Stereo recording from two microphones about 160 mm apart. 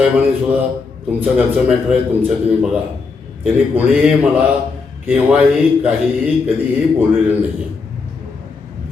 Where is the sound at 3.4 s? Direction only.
10° right (ahead or behind).